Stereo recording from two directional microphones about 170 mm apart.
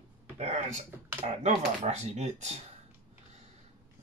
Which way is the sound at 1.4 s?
40° right (ahead or behind).